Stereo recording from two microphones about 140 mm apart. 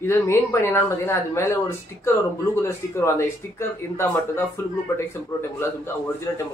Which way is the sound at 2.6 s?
20° left (ahead or behind).